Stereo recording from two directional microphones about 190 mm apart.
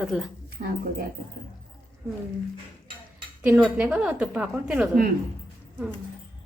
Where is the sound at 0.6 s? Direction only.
50° right (ahead or behind).